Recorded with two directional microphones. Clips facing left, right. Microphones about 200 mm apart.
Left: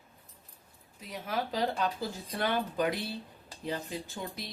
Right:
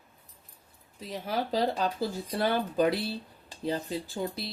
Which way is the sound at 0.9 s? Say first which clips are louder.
Right 3 dB; 30° right (ahead or behind).